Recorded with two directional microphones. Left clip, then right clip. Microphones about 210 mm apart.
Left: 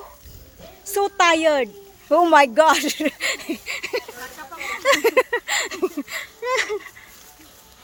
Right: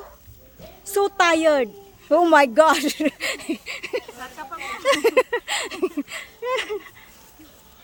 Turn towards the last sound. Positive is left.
turn(degrees=0)  # may be behind; listen again after turning